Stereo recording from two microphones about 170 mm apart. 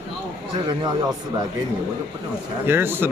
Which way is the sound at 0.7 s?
20° right (ahead or behind).